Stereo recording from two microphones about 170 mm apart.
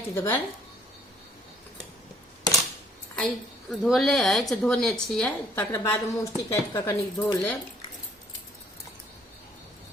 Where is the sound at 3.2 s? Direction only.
5° left (ahead or behind).